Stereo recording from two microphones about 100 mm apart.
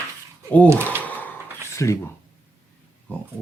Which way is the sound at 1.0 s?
15° left (ahead or behind).